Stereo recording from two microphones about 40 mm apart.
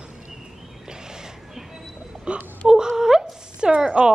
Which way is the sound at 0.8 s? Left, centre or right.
Centre.